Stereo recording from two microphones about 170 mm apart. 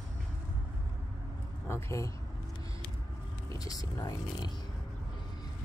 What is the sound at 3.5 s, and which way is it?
Speech, 20° left (ahead or behind).